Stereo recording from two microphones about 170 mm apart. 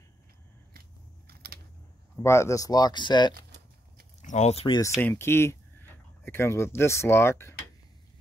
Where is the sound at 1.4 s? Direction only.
65° right (ahead or behind).